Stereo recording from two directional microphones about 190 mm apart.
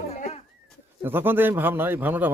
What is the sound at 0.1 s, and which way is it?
Goat, 35° left (ahead or behind).